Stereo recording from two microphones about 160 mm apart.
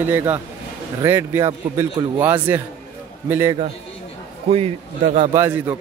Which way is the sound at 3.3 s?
15° right (ahead or behind).